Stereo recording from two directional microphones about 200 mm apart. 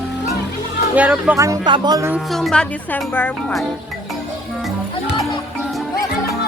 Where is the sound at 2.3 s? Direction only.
Centre (ahead or behind).